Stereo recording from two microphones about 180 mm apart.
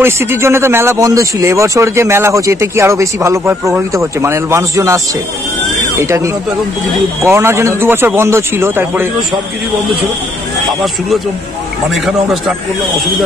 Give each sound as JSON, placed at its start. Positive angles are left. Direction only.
{"t": 0.0, "sound": "speech", "side_deg": -15}
{"t": 6.0, "sound": "speech", "side_deg": -15}
{"t": 11.9, "sound": "a man's voice", "side_deg": 0}